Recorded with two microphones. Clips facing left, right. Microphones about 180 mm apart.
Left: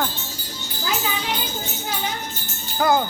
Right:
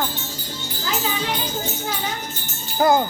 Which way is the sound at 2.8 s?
25° right (ahead or behind).